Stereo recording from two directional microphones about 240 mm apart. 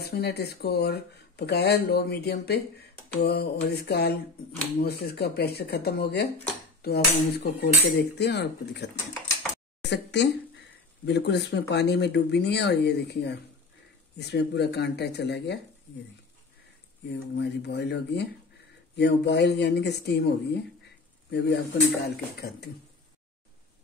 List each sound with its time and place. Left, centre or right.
0.1 s speech: left
17.4 s speech: left